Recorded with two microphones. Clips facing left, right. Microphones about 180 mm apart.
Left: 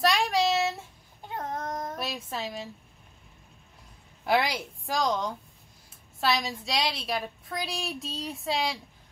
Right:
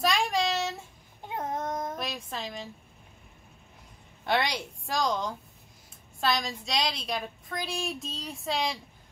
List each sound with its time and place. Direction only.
0.0 s child singing: centre (ahead or behind)
1.3 s child singing: 20° right (ahead or behind)
2.0 s a woman's voice: 5° left (ahead or behind)
4.2 s a woman's voice: 5° left (ahead or behind)